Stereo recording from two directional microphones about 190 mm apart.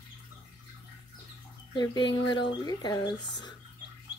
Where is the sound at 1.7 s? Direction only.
25° left (ahead or behind).